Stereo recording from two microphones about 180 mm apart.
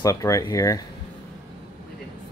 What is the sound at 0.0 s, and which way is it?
Speech, 20° left (ahead or behind).